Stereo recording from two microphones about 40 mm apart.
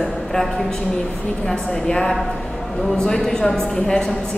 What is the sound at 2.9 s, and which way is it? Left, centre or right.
A woman's voice, centre.